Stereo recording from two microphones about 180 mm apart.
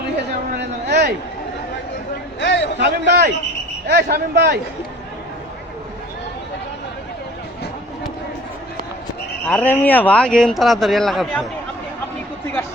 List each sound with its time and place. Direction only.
0.6 s a sound: 70° right (ahead or behind)
2.4 s a man's voice: 75° left (ahead or behind)
2.7 s a man's voice: 75° right (ahead or behind)
9.5 s a man's voice: 10° left (ahead or behind)